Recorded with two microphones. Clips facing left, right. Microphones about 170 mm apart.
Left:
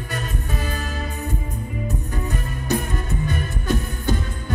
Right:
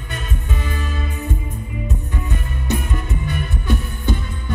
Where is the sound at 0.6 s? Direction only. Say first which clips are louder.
Right 1 dB; 40° left (ahead or behind).